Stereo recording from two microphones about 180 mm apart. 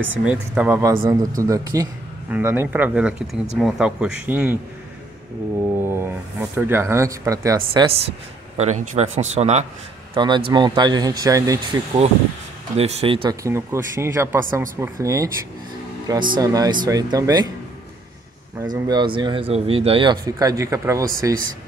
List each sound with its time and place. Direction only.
0.2 s a man's voice: 5° right (ahead or behind)
5.9 s speech: 15° right (ahead or behind)
8.5 s speech: 40° right (ahead or behind)
10.1 s speech: 25° right (ahead or behind)
12.7 s speech: 35° right (ahead or behind)
13.4 s speech: 15° right (ahead or behind)
18.7 s speech: 25° right (ahead or behind)